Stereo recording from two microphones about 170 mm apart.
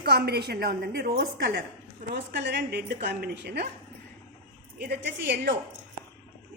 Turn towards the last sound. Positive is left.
turn(degrees=-90)